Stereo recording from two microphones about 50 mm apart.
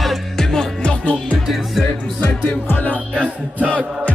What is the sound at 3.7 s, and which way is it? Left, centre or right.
Chant, left.